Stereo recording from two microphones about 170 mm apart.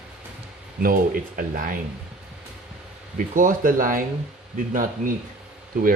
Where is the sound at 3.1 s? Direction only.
50° right (ahead or behind).